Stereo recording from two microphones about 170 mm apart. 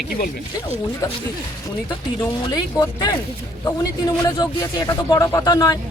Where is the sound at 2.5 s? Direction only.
20° left (ahead or behind).